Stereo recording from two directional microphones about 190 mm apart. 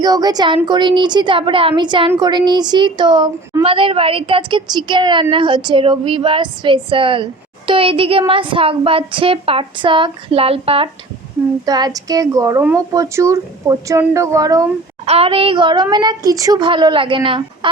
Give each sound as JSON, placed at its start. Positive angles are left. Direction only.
{"t": 0.0, "sound": "a woman's voice", "side_deg": -20}
{"t": 11.6, "sound": "a woman's voice", "side_deg": -20}
{"t": 15.0, "sound": "a woman's voice", "side_deg": -30}